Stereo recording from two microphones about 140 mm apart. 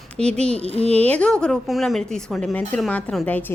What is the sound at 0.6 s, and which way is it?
Speech, 45° left (ahead or behind).